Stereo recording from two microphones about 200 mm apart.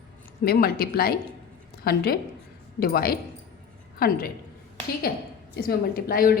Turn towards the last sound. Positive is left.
turn(degrees=45)  # may be behind; listen again after turning